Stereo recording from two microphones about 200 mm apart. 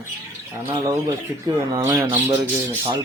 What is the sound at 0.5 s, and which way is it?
Speech, 15° right (ahead or behind).